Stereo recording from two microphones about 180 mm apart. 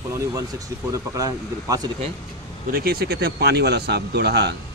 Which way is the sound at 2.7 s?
55° right (ahead or behind).